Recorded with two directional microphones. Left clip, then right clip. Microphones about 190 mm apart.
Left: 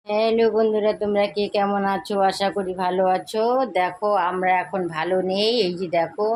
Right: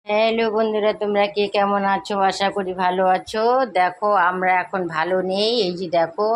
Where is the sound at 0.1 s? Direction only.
5° right (ahead or behind).